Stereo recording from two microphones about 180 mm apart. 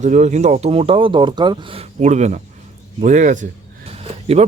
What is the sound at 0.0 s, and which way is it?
Speech, 40° right (ahead or behind).